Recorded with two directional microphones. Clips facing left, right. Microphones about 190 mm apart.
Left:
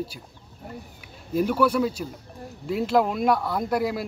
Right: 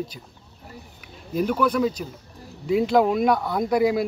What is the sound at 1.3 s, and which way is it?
Speech, 5° left (ahead or behind).